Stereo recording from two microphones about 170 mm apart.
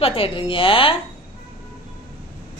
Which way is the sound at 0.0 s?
35° left (ahead or behind).